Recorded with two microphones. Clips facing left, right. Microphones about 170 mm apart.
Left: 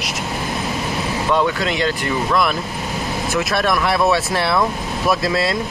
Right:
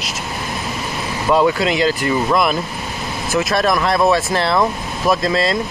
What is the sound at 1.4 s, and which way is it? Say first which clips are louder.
Speech: right 4 dB; 5° right (ahead or behind).